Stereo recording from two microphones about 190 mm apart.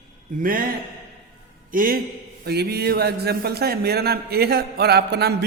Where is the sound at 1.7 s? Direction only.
45° right (ahead or behind).